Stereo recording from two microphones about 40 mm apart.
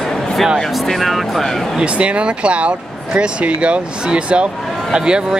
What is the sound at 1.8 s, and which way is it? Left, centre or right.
Speech, right.